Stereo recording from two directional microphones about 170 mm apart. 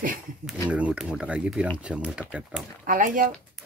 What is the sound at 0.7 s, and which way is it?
Speech, 5° right (ahead or behind).